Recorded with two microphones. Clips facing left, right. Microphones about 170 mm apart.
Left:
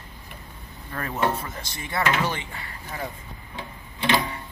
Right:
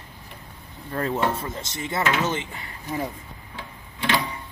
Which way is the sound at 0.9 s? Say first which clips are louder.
Right 2 dB; 25° right (ahead or behind).